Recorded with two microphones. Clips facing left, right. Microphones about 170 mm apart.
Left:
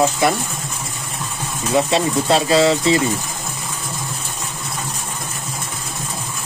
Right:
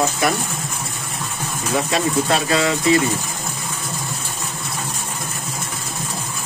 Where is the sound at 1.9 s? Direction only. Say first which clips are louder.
Left 2 dB; 30° left (ahead or behind).